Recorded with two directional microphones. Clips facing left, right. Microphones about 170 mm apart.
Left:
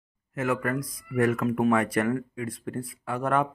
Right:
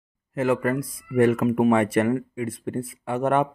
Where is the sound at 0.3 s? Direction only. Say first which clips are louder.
Right 5 dB; 30° right (ahead or behind).